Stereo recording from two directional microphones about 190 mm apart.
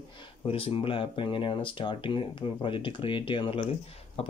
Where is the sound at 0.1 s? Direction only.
25° left (ahead or behind).